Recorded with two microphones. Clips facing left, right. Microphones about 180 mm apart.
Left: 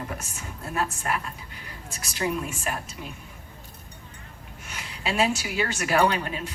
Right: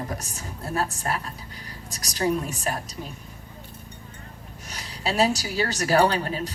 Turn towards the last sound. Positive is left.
turn(degrees=-35)  # may be behind; listen again after turning